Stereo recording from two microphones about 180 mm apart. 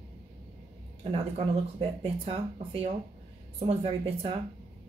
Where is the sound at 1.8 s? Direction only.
35° right (ahead or behind).